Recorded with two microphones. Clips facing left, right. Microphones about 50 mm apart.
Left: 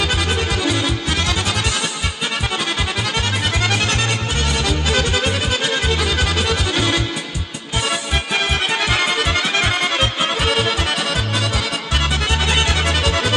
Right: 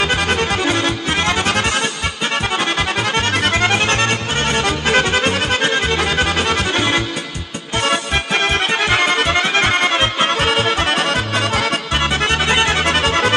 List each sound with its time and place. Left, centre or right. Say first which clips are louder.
0.0 s music: right 3 dB; right
3.6 s music: right 4 dB; right
7.8 s music: right 4 dB; right
8.8 s music: right 4 dB; right